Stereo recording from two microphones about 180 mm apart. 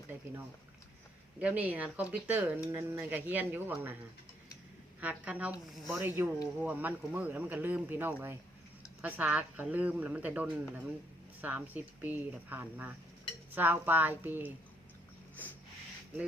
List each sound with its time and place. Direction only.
1.4 s a man's voice: 5° right (ahead or behind)
4.9 s a man's voice: 10° right (ahead or behind)